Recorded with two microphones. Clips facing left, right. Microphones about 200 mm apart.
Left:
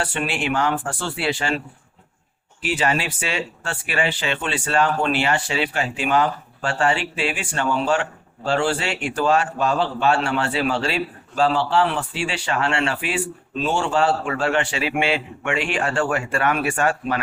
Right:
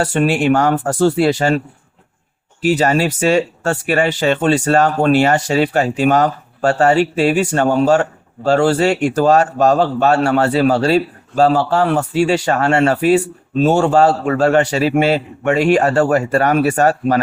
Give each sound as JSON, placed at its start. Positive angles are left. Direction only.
{"t": 0.0, "sound": "a man's voice", "side_deg": -45}